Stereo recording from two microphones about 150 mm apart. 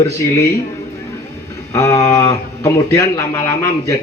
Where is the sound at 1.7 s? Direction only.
20° left (ahead or behind).